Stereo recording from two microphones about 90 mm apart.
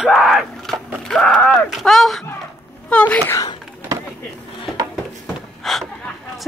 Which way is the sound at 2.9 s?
15° left (ahead or behind).